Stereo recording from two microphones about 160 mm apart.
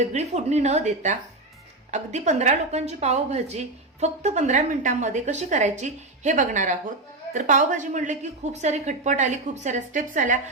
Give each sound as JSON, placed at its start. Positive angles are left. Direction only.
{"t": 0.0, "sound": "a woman's voice", "side_deg": -45}